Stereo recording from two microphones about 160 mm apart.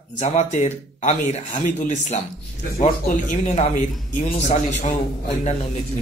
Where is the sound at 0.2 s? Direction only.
45° left (ahead or behind).